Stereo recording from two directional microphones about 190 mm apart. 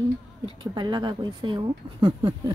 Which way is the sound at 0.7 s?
20° right (ahead or behind).